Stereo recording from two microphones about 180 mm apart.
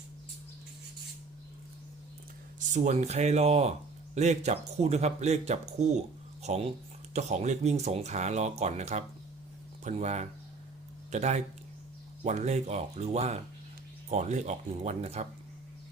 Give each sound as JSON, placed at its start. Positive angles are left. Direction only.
{"t": 2.6, "sound": "speech", "side_deg": -40}